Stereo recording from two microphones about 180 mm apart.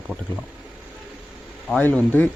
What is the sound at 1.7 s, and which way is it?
Speech, 10° left (ahead or behind).